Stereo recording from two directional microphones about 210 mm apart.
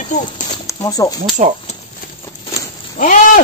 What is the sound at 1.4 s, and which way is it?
Speech, 35° right (ahead or behind).